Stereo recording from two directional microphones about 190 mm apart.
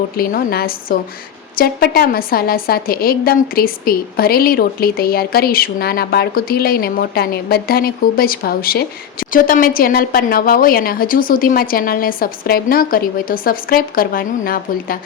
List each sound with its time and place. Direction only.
0.2 s a woman's voice: 50° left (ahead or behind)